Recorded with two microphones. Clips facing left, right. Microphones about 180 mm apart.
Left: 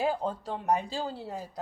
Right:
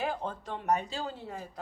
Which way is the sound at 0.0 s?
35° left (ahead or behind).